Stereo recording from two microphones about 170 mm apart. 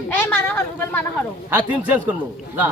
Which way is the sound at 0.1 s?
10° left (ahead or behind).